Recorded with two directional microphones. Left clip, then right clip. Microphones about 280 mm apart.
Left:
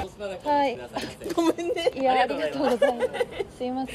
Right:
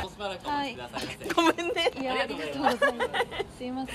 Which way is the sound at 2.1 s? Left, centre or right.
Right.